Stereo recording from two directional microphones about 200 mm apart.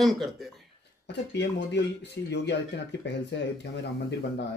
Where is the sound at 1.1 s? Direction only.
60° left (ahead or behind).